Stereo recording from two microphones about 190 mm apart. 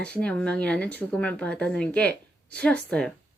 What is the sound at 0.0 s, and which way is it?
A woman's voice, 5° left (ahead or behind).